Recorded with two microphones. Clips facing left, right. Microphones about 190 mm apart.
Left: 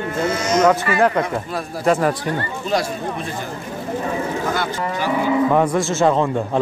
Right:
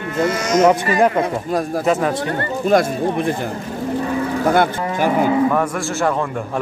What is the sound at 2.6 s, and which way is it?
Speech, 50° right (ahead or behind).